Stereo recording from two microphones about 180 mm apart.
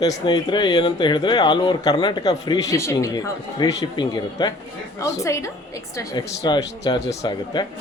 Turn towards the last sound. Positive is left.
turn(degrees=20)  # may be behind; listen again after turning